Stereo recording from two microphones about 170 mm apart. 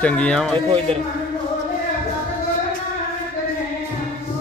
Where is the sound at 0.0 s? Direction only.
5° left (ahead or behind).